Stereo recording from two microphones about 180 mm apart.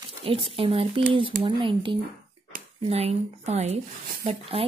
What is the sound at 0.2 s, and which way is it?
Speech, 30° right (ahead or behind).